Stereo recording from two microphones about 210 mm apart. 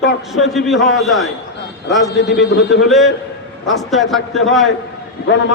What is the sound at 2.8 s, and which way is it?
A man's voice, centre (ahead or behind).